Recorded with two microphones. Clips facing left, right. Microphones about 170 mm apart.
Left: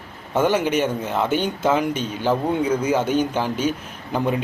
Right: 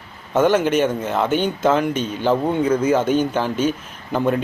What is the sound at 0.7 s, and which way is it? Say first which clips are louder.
Speech: right 3 dB; 50° right (ahead or behind).